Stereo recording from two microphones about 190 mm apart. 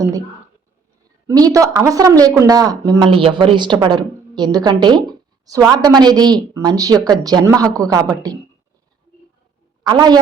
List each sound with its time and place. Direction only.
1.3 s speech: 20° right (ahead or behind)
9.8 s a man's voice: 20° right (ahead or behind)